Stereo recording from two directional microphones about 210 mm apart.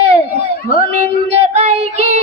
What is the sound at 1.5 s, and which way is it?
Child singing, 30° right (ahead or behind).